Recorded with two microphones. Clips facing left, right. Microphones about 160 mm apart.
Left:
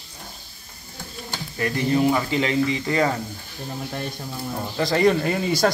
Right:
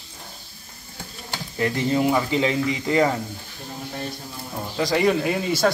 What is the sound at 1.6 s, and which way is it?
Speech, 20° right (ahead or behind).